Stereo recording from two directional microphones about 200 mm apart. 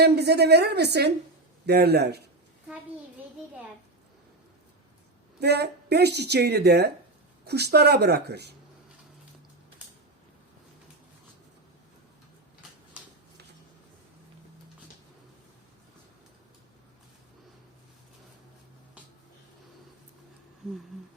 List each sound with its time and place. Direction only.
0.0 s a woman's voice: 55° right (ahead or behind)
5.4 s a woman's voice: 55° right (ahead or behind)